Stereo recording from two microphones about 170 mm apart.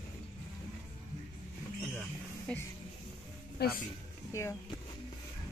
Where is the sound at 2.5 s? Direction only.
5° left (ahead or behind).